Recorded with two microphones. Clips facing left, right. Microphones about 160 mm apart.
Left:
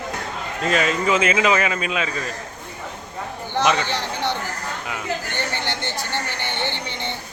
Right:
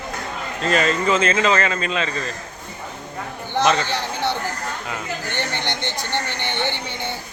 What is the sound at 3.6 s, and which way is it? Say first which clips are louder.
Speech: right 1 dB; 10° left (ahead or behind).